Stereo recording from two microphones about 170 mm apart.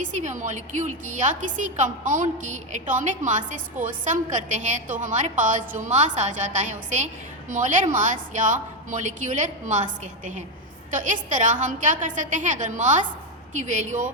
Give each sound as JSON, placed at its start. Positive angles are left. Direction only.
{"t": 0.0, "sound": "a woman's voice", "side_deg": -45}